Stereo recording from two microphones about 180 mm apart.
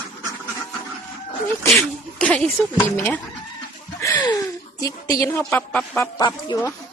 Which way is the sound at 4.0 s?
20° left (ahead or behind).